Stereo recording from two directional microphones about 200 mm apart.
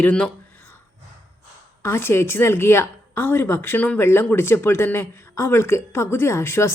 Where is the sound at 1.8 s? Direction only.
10° left (ahead or behind).